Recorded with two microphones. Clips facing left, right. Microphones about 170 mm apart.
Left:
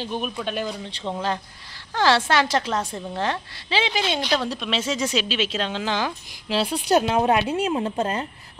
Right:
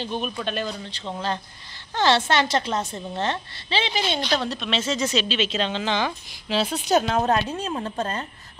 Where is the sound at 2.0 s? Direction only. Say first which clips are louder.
Left 1 dB; 5° left (ahead or behind).